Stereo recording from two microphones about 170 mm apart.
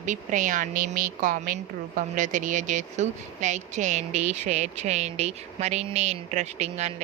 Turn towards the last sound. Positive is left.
turn(degrees=-40)  # may be behind; listen again after turning